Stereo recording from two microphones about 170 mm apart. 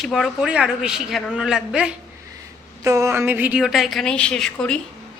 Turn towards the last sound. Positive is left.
turn(degrees=5)  # may be behind; listen again after turning